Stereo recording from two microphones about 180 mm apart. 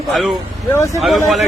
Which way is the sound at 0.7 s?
15° left (ahead or behind).